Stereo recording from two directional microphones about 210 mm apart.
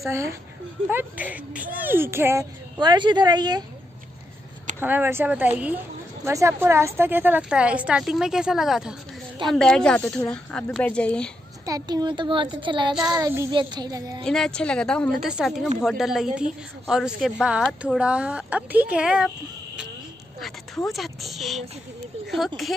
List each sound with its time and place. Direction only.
0.1 s speech: 15° right (ahead or behind)
4.7 s a woman's voice: 10° right (ahead or behind)
11.6 s a woman's voice: 20° right (ahead or behind)
14.2 s a woman's voice: 5° left (ahead or behind)
20.3 s a woman's voice: centre (ahead or behind)